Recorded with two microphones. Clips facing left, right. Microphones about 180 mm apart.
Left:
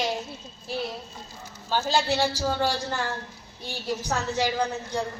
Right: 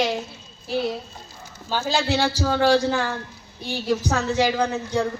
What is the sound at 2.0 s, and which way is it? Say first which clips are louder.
A man's voice: right 3 dB; 90° right.